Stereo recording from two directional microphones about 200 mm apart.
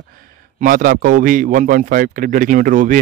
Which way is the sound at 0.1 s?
45° right (ahead or behind).